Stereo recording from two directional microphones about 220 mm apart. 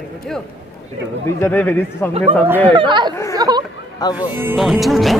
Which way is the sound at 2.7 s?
20° right (ahead or behind).